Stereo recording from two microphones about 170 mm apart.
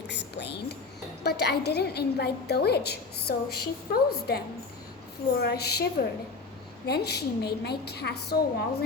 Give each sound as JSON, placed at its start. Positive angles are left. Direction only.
{"t": 0.1, "sound": "whispering", "side_deg": 85}
{"t": 1.2, "sound": "a woman's voice", "side_deg": 70}